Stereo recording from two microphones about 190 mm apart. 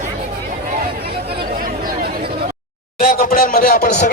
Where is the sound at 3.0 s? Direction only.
45° left (ahead or behind).